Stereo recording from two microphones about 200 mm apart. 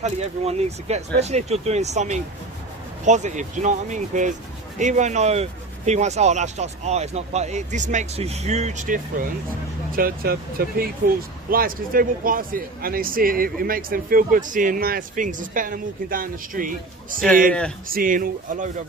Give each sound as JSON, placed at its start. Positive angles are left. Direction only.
{"t": 0.0, "sound": "speech", "side_deg": -35}